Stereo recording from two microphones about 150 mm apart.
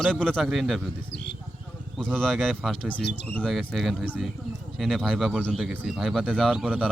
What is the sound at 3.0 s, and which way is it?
Speech, 90° left.